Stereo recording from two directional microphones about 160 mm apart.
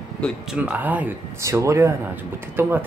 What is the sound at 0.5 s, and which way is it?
Speech, 10° right (ahead or behind).